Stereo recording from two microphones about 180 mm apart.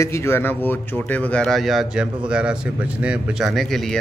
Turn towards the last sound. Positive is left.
turn(degrees=0)  # may be behind; listen again after turning